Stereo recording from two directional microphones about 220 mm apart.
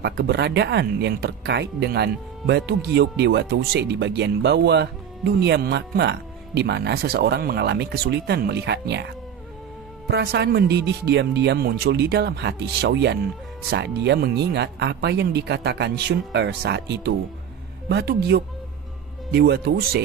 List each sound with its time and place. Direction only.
0.0 s speech: 50° right (ahead or behind)